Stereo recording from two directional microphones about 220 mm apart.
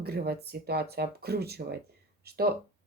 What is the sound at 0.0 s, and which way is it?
Speech, 45° right (ahead or behind).